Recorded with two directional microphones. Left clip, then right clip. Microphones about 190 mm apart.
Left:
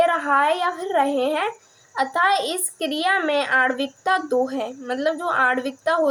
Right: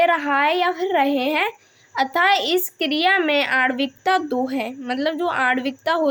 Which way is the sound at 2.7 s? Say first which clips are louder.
Right 1 dB; 25° right (ahead or behind).